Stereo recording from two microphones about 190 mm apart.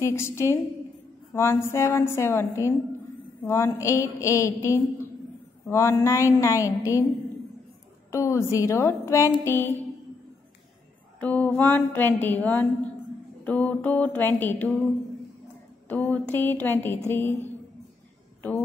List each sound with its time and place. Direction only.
0.0 s a woman's voice: 15° left (ahead or behind)
8.1 s a woman's voice: 15° left (ahead or behind)
11.1 s a woman's voice: 10° left (ahead or behind)
15.9 s a woman's voice: 10° left (ahead or behind)